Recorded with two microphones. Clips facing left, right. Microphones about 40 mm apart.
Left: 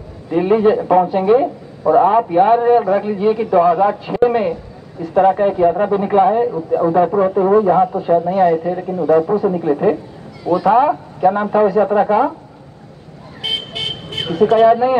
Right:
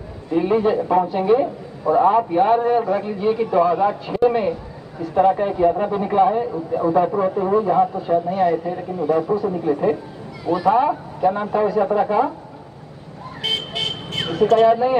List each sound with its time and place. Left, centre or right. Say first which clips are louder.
0.3 s speech: left 5 dB; centre
8.3 s a man's voice: left 5 dB; centre
9.3 s speech: left 4 dB; centre
13.4 s vehicle: left 1 dB; centre